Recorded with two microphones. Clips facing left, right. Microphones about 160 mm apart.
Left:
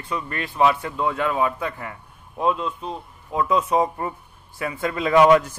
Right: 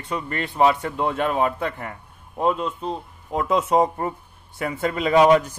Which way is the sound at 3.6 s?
35° right (ahead or behind).